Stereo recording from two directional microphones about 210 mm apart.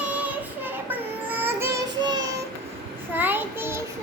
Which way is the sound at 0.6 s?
10° right (ahead or behind).